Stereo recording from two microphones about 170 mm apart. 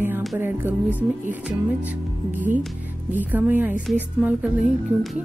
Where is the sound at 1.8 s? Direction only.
10° right (ahead or behind).